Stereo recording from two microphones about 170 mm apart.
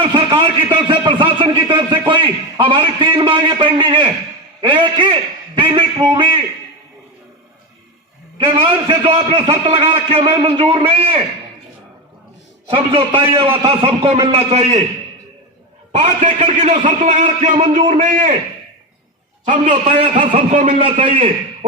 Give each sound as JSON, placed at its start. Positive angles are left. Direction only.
{"t": 0.0, "sound": "a sound", "side_deg": -30}
{"t": 4.6, "sound": "a man's voice", "side_deg": -30}
{"t": 8.4, "sound": "a man's voice", "side_deg": -30}
{"t": 12.7, "sound": "a man's voice", "side_deg": -30}
{"t": 15.9, "sound": "a man's voice", "side_deg": -45}
{"t": 20.3, "sound": "a man's voice", "side_deg": -45}
{"t": 20.8, "sound": "a man's voice", "side_deg": -35}